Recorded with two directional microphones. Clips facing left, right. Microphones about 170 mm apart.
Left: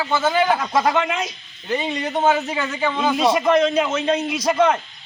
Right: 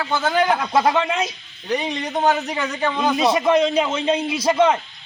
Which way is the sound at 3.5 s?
10° right (ahead or behind).